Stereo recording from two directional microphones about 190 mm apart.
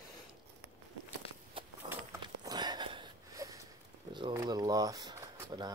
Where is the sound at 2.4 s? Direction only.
20° right (ahead or behind).